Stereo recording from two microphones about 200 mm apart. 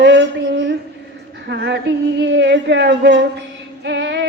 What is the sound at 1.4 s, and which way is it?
Female singing, 55° right (ahead or behind).